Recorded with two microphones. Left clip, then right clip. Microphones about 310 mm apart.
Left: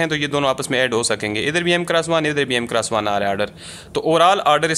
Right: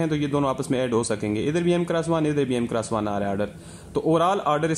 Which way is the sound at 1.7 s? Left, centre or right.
Left.